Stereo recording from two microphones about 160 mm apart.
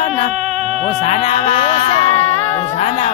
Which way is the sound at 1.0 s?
45° left (ahead or behind).